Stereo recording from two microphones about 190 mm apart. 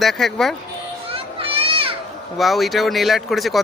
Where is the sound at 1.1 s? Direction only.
30° right (ahead or behind).